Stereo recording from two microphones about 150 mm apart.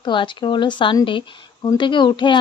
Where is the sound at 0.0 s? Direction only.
30° left (ahead or behind).